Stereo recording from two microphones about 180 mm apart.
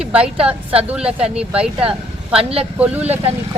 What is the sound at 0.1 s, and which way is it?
A woman's voice, 5° right (ahead or behind).